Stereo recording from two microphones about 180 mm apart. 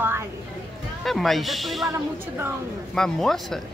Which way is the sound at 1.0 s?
Centre (ahead or behind).